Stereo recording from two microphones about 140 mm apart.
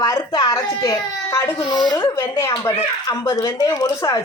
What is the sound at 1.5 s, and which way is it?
Speech, 30° left (ahead or behind).